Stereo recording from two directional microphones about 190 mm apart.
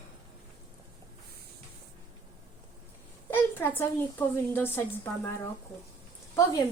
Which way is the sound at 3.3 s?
10° left (ahead or behind).